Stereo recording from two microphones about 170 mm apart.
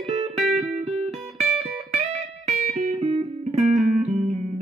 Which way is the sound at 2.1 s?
40° right (ahead or behind).